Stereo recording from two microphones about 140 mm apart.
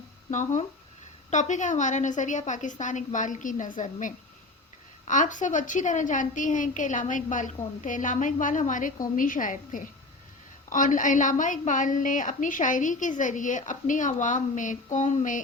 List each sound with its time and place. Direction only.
0.3 s a woman's voice: 60° left (ahead or behind)